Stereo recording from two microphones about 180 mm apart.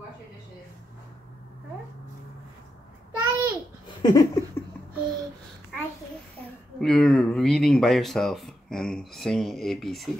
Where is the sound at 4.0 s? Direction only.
25° left (ahead or behind).